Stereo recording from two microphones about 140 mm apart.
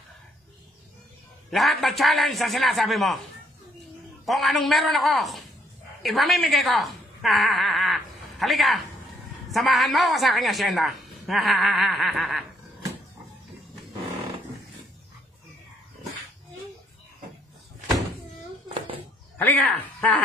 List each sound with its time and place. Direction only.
1.5 s a woman's voice: centre (ahead or behind)
4.3 s a woman's voice: centre (ahead or behind)
18.7 s a sound: 40° right (ahead or behind)
19.3 s speech: 15° left (ahead or behind)